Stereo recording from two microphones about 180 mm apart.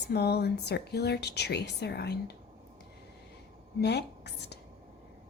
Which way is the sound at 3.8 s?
70° left (ahead or behind).